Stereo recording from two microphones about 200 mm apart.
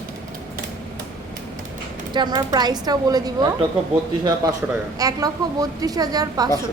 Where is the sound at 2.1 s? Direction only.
20° right (ahead or behind).